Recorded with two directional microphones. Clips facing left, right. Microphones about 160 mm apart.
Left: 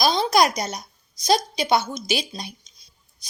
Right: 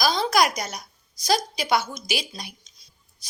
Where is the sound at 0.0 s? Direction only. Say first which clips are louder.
Left 2 dB; 25° left (ahead or behind).